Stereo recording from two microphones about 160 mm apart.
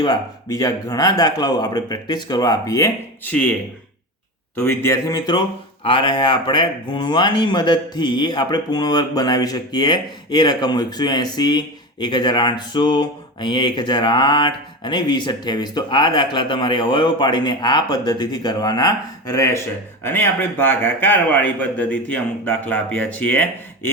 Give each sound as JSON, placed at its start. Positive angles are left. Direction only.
{"t": 0.0, "sound": "speech", "side_deg": 25}
{"t": 4.5, "sound": "a man's voice", "side_deg": 15}